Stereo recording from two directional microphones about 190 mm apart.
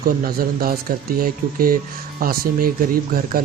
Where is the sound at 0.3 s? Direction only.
50° right (ahead or behind).